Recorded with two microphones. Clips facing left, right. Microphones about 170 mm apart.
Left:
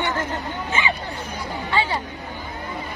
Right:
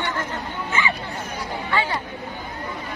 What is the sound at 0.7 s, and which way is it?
Speech, 25° left (ahead or behind).